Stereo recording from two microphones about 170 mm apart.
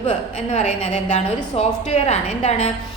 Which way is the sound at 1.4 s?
35° left (ahead or behind).